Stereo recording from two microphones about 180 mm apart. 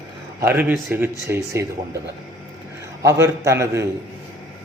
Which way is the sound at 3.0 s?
15° right (ahead or behind).